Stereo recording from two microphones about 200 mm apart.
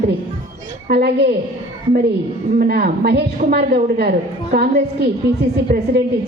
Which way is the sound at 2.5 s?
50° right (ahead or behind).